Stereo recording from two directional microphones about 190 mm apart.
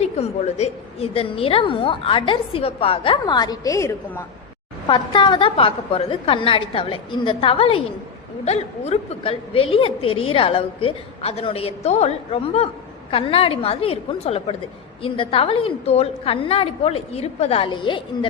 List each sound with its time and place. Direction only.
0.0 s a woman's voice: 35° left (ahead or behind); by 4.3 s 15° left (ahead or behind)
4.9 s a woman's voice: 25° left (ahead or behind)